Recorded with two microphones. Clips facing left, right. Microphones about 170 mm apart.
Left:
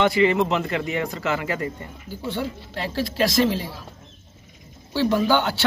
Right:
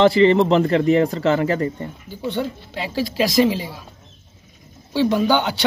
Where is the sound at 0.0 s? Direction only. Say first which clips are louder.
Right 5 dB; 35° right (ahead or behind).